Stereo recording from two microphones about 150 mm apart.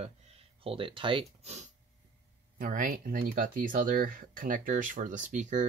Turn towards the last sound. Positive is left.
turn(degrees=-55)  # may be behind; listen again after turning